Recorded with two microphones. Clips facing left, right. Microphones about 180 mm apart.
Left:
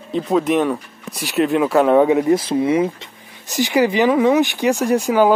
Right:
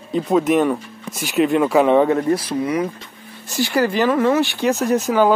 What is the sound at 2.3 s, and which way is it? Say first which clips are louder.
Speech: left 4 dB; 25° left (ahead or behind).